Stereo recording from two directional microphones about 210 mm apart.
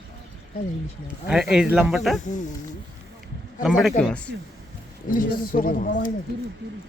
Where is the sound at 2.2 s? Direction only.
35° left (ahead or behind).